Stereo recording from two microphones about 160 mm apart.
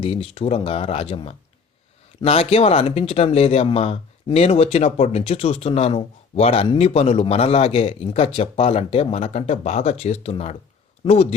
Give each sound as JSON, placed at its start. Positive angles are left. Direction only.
{"t": 0.0, "sound": "speech", "side_deg": 35}